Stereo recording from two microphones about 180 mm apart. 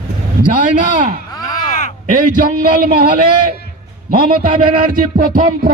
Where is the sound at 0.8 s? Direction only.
50° right (ahead or behind).